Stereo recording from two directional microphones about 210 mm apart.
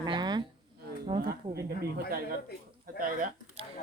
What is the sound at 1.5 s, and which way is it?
Speech, 45° right (ahead or behind).